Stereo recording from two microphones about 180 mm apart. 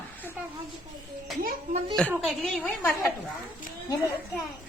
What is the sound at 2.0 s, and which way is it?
Speech, 5° left (ahead or behind).